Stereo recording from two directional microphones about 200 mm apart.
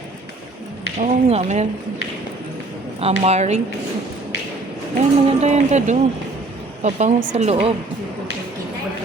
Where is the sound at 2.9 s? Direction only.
30° right (ahead or behind).